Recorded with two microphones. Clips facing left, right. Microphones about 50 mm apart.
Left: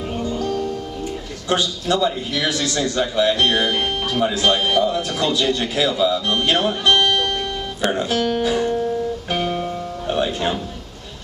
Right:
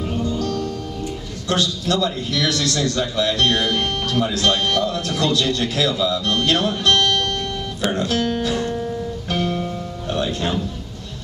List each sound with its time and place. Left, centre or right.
0.3 s music: centre
1.5 s a man's voice: centre